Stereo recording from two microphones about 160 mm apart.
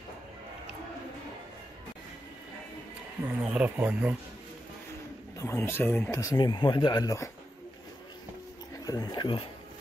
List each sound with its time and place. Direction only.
3.4 s speech: 10° right (ahead or behind)
5.4 s speech: 15° left (ahead or behind)
8.8 s a sound: 25° left (ahead or behind)